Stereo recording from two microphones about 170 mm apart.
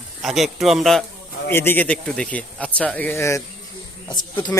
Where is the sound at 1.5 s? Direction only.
15° left (ahead or behind).